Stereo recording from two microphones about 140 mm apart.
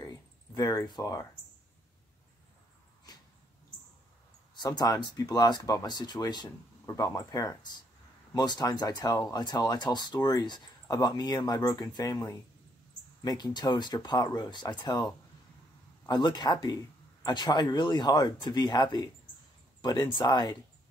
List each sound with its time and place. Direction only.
0.6 s speech: 25° left (ahead or behind)
4.6 s speech: 30° left (ahead or behind)
16.1 s speech: 30° left (ahead or behind)